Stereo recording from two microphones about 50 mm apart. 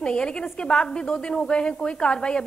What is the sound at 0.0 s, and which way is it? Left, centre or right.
A woman's voice, centre.